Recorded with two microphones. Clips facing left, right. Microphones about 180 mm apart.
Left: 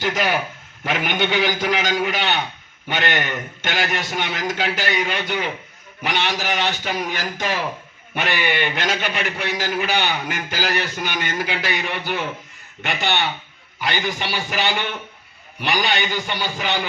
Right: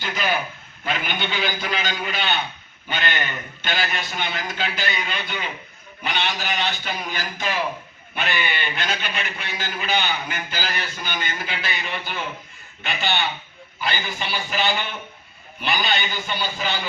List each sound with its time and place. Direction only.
0.0 s a man's voice: 90° left
8.1 s a man's voice: 80° left